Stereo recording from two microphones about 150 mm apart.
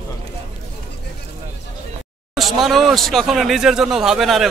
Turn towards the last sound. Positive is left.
turn(degrees=0)  # may be behind; listen again after turning